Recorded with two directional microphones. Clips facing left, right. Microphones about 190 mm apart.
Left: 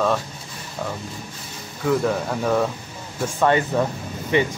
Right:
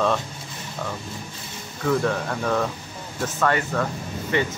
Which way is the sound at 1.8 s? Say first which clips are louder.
Left 2 dB; 5° left (ahead or behind).